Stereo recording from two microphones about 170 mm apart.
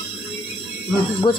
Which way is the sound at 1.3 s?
30° left (ahead or behind).